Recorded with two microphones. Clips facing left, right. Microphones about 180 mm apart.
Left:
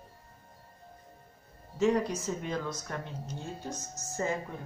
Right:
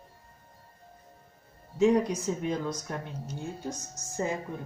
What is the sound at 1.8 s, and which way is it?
Speech, 15° right (ahead or behind).